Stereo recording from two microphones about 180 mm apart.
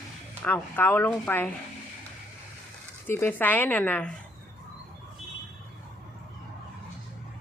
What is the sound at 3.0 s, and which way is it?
A woman's voice, 10° left (ahead or behind).